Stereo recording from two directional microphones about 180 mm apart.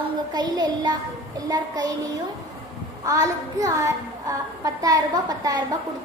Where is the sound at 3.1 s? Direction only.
20° right (ahead or behind).